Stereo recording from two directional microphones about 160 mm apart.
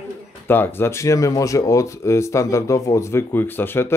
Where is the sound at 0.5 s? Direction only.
15° left (ahead or behind).